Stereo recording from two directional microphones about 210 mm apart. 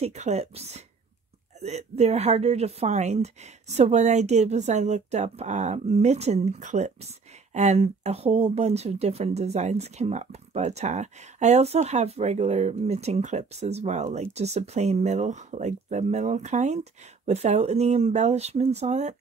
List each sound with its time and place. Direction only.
0.0 s a woman's voice: 30° right (ahead or behind)